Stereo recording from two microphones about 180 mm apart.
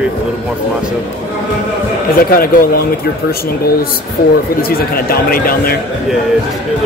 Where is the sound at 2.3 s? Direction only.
55° left (ahead or behind).